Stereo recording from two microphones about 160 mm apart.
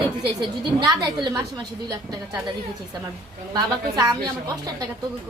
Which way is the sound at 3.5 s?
25° right (ahead or behind).